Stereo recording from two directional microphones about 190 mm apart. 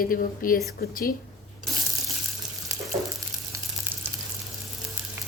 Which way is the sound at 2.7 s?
15° right (ahead or behind).